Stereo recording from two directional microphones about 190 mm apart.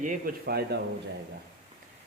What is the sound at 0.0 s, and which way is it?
Speech, 45° right (ahead or behind).